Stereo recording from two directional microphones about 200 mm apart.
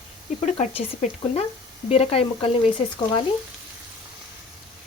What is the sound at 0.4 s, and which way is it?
Speech, 30° left (ahead or behind).